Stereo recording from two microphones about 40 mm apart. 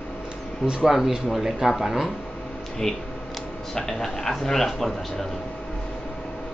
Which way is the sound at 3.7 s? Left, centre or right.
Centre.